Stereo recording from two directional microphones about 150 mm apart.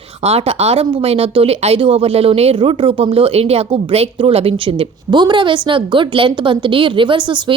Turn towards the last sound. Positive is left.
turn(degrees=-35)  # may be behind; listen again after turning